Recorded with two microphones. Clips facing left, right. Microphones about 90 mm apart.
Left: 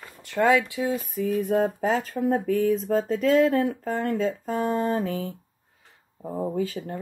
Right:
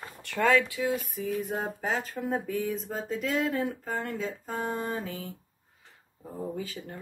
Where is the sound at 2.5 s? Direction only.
40° left (ahead or behind).